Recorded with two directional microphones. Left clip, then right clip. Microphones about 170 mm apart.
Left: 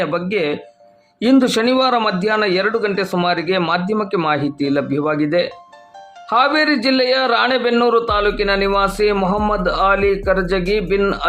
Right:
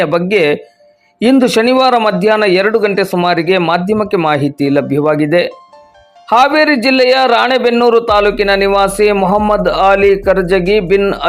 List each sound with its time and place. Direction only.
0.0 s a man's voice: 30° right (ahead or behind)